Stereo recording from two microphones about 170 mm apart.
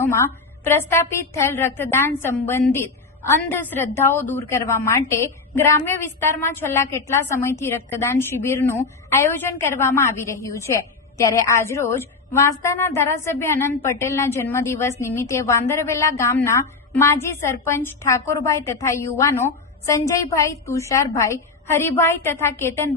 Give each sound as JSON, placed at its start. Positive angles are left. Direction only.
{"t": 0.0, "sound": "a woman's voice", "side_deg": 15}